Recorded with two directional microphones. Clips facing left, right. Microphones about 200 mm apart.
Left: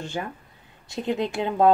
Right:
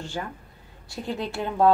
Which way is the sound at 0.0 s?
20° left (ahead or behind).